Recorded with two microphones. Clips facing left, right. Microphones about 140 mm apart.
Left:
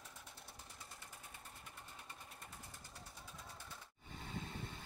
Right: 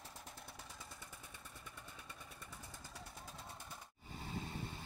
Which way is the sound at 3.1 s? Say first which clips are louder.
Right 3 dB; 50° right (ahead or behind).